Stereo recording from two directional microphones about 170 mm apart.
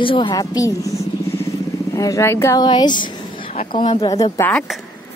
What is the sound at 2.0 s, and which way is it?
A woman's voice, 20° left (ahead or behind).